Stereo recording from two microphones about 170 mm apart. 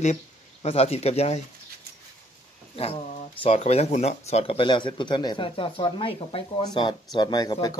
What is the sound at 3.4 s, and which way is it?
Speech, 35° left (ahead or behind).